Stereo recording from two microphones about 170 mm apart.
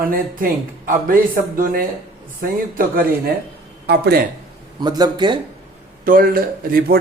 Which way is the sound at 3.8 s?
75° right (ahead or behind).